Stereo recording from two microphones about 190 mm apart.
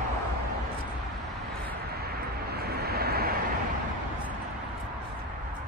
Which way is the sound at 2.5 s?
55° right (ahead or behind).